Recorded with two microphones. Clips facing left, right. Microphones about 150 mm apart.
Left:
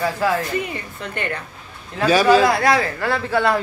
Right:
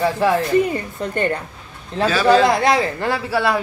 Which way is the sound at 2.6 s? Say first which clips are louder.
Right 1 dB; 20° right (ahead or behind).